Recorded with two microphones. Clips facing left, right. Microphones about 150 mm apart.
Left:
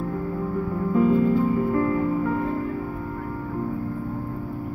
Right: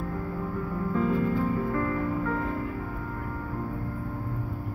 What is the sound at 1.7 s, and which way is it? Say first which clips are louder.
Music: left 6 dB; 20° left (ahead or behind).